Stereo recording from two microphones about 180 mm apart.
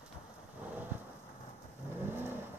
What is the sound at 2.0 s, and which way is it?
Vehicle, 10° right (ahead or behind).